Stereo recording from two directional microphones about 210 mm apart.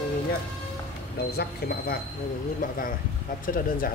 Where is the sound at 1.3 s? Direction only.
50° left (ahead or behind).